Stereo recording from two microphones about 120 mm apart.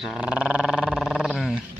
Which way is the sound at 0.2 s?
10° right (ahead or behind).